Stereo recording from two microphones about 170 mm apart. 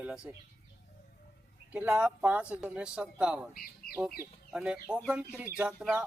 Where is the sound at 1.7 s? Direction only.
10° right (ahead or behind).